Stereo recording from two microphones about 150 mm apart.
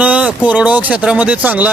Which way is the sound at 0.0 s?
10° right (ahead or behind).